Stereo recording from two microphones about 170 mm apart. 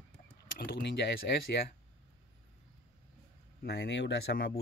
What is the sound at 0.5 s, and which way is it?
Speech, 65° left (ahead or behind).